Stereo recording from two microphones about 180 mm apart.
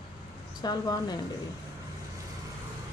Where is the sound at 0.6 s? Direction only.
20° left (ahead or behind).